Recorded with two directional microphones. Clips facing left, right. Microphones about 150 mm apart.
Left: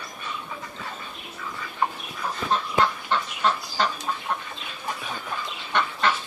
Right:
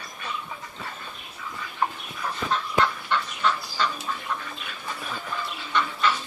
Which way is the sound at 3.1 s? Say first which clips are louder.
Left 1 dB; 40° left (ahead or behind).